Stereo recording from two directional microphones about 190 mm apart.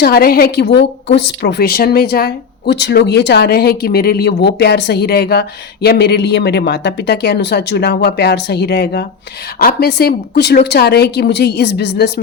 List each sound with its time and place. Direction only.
0.0 s speech: 55° left (ahead or behind)